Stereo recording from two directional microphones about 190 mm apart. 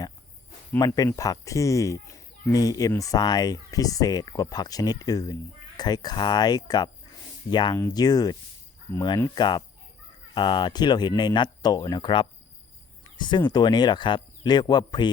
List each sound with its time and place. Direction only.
0.7 s speech: 15° left (ahead or behind)